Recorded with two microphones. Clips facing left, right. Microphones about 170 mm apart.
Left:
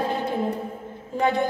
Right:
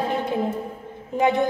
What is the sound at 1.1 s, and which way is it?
Speech, 15° right (ahead or behind).